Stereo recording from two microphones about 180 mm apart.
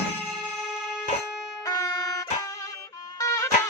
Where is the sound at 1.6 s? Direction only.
20° left (ahead or behind).